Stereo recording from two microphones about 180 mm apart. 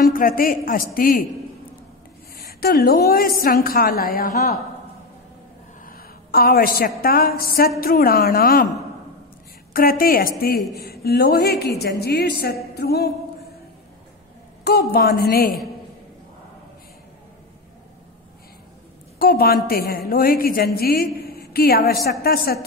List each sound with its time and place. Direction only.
0.0 s a woman's voice: 50° left (ahead or behind)
2.3 s a woman's voice: 55° left (ahead or behind)
5.9 s a woman's voice: 55° left (ahead or behind)
9.8 s a woman's voice: 55° left (ahead or behind)
14.6 s a woman's voice: 65° left (ahead or behind)
19.1 s a woman's voice: 60° left (ahead or behind)